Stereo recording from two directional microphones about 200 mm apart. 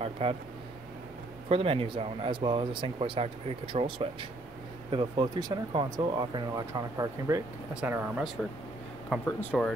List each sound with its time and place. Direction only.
0.0 s speech: 30° right (ahead or behind)
1.5 s speech: 30° right (ahead or behind); by 9.7 s 5° left (ahead or behind)